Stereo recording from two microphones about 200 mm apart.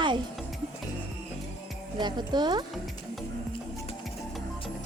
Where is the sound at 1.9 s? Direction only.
20° right (ahead or behind).